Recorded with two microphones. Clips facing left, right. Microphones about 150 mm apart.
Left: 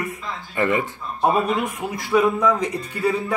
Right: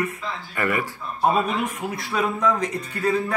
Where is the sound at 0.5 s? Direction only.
20° left (ahead or behind).